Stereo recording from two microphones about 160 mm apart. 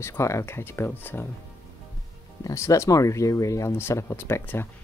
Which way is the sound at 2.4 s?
20° left (ahead or behind).